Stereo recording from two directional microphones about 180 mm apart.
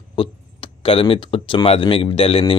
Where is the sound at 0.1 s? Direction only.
30° left (ahead or behind).